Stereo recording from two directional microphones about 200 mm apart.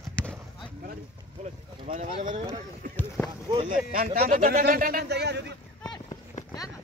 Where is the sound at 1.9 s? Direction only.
35° right (ahead or behind).